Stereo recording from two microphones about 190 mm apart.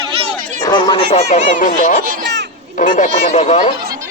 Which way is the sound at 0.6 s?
25° left (ahead or behind).